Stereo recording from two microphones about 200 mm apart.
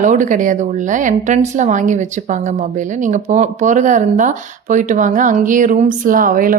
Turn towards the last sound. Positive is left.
turn(degrees=-45)  # may be behind; listen again after turning